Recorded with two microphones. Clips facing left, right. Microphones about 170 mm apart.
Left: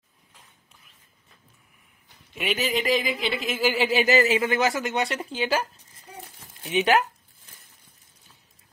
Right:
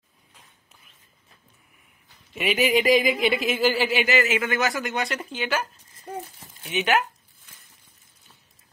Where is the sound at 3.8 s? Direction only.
35° left (ahead or behind).